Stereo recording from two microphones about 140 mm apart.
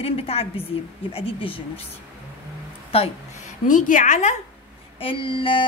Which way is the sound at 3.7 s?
70° left (ahead or behind).